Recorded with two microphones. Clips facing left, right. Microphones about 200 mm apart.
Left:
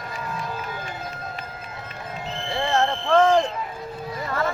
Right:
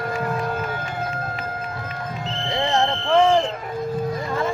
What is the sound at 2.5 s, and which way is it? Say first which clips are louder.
Fire alarm: right 1 dB; 20° right (ahead or behind).